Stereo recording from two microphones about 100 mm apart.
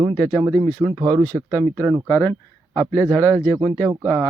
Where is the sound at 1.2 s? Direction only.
15° left (ahead or behind).